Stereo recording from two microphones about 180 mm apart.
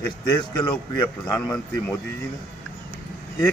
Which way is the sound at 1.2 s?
15° left (ahead or behind).